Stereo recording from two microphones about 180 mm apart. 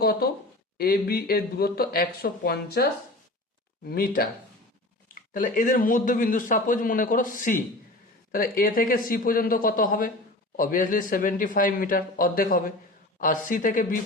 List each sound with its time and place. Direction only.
0.0 s speech: 60° left (ahead or behind)
3.8 s speech: 55° left (ahead or behind)